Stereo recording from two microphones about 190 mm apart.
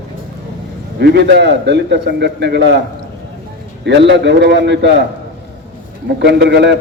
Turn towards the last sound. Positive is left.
turn(degrees=-65)  # may be behind; listen again after turning